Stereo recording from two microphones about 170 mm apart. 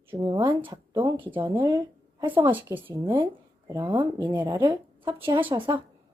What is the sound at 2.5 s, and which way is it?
Speech, 10° right (ahead or behind).